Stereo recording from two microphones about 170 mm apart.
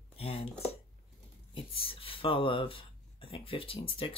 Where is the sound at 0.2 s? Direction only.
35° left (ahead or behind).